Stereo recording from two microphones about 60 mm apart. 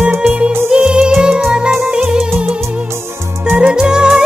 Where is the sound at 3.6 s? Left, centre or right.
Centre.